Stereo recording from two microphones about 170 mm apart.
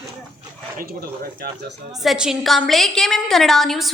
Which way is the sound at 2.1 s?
5° right (ahead or behind).